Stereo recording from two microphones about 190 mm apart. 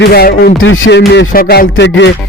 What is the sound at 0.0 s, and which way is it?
Music, 55° left (ahead or behind).